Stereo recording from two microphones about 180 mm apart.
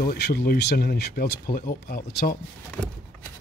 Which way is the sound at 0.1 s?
60° left (ahead or behind).